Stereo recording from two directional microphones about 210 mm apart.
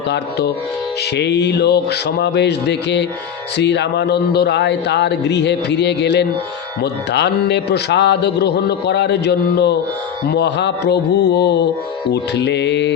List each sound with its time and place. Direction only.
0.1 s music: 50° left (ahead or behind)
3.6 s speech: 55° left (ahead or behind)
6.8 s music: 55° left (ahead or behind)
12.1 s speech: 55° left (ahead or behind)